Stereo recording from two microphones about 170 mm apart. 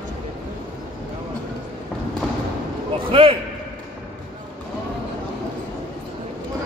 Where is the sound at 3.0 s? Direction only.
30° right (ahead or behind).